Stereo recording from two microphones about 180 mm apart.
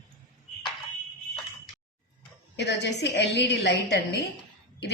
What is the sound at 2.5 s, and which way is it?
A woman's voice, 70° left (ahead or behind).